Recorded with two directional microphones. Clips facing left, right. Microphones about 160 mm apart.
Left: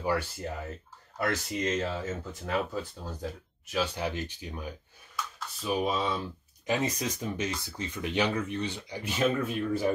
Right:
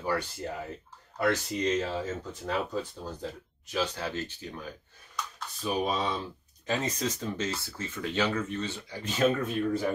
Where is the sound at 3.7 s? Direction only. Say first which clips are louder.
Left 1 dB; 10° left (ahead or behind).